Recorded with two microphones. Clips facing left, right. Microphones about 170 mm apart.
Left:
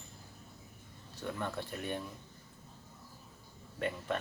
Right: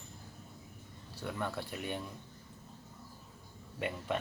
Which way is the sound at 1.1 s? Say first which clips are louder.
Even; 10° right (ahead or behind).